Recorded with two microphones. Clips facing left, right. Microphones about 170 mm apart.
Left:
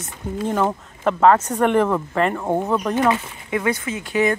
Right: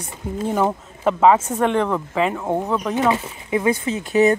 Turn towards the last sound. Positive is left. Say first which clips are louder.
# right 4 dB
turn(degrees=-25)  # may be behind; listen again after turning